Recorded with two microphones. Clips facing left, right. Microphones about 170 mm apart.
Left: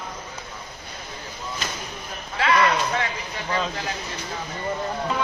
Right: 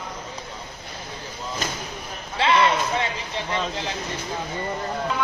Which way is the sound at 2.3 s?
25° right (ahead or behind).